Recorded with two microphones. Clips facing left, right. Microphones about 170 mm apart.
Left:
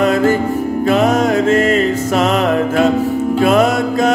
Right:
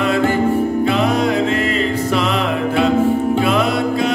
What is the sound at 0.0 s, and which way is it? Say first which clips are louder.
Music: left 2 dB; 40° left (ahead or behind).